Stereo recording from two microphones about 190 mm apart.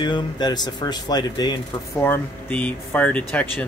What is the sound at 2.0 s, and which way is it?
Speech, 10° left (ahead or behind).